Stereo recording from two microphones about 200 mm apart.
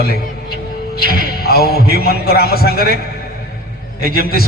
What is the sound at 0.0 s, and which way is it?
A man's voice, 50° left (ahead or behind).